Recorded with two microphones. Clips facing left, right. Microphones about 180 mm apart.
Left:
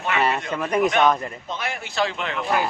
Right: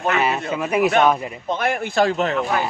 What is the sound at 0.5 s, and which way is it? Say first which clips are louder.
Speech: right 4 dB; 5° right (ahead or behind).